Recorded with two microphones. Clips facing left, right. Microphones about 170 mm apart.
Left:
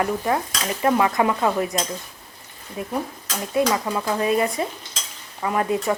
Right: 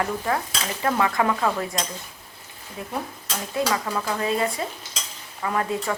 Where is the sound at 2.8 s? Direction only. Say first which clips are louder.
Left 4 dB; 15° left (ahead or behind).